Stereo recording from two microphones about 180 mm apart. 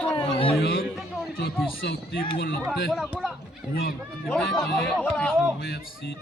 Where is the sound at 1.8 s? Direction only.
70° left (ahead or behind).